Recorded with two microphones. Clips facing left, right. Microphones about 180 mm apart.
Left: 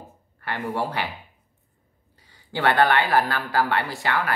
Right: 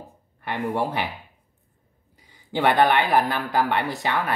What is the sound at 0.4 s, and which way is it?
Speech, 20° right (ahead or behind).